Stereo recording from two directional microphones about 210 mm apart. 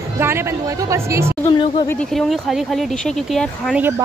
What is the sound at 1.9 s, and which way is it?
Speech, 5° left (ahead or behind).